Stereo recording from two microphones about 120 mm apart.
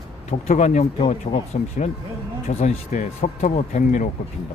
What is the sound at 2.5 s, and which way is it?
Speech, 70° left (ahead or behind).